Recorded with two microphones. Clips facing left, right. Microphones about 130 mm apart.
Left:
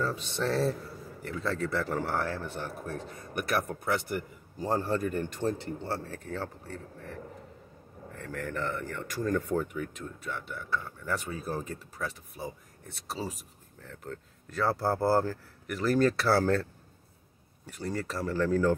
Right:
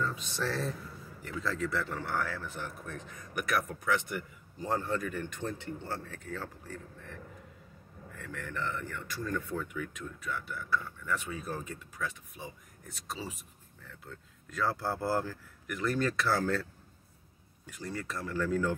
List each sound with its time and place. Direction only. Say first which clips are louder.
0.3 s speech: left 6 dB; 25° left (ahead or behind)
11.1 s speech: left 4 dB; 35° left (ahead or behind)
17.8 s speech: left 5 dB; 35° left (ahead or behind)